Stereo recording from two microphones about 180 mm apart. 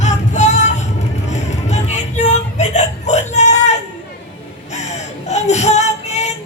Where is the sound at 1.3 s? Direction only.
40° left (ahead or behind).